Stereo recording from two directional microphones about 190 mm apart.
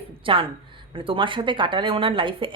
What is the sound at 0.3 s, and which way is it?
Speech, 25° right (ahead or behind).